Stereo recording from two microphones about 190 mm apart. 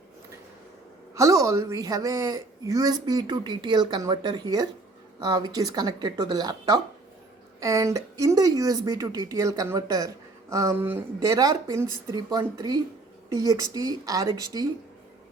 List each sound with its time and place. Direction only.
1.1 s a woman's voice: 15° right (ahead or behind)